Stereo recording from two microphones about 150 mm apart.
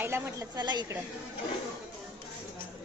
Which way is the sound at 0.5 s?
30° right (ahead or behind).